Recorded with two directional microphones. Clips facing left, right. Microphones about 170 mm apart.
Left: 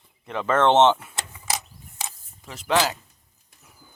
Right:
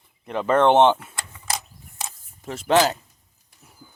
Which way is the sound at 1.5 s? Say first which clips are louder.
Right 1 dB; centre (ahead or behind).